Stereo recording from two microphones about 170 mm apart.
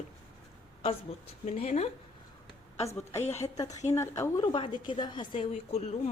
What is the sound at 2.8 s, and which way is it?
A woman's voice, 15° left (ahead or behind).